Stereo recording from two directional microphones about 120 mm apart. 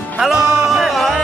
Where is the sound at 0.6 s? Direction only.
Centre (ahead or behind).